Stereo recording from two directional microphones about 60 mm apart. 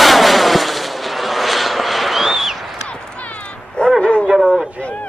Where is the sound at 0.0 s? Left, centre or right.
Centre.